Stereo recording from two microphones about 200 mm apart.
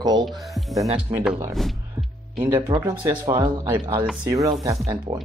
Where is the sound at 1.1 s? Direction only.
10° right (ahead or behind).